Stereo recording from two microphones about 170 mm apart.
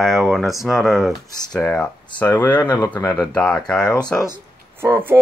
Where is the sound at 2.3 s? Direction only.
25° left (ahead or behind).